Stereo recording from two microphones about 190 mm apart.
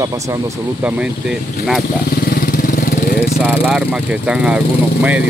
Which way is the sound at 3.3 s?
5° right (ahead or behind).